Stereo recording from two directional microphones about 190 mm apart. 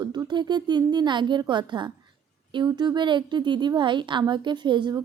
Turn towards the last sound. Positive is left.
turn(degrees=-25)  # may be behind; listen again after turning